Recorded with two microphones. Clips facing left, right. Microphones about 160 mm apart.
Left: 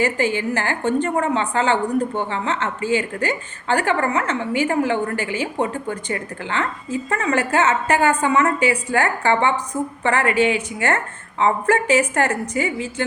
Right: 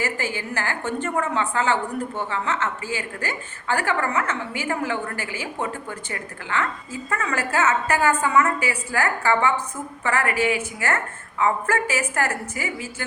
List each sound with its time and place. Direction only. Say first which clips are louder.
0.0 s a woman's voice: left 7 dB; 20° left (ahead or behind)